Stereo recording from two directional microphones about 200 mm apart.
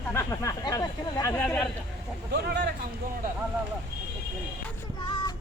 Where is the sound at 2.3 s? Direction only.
55° right (ahead or behind).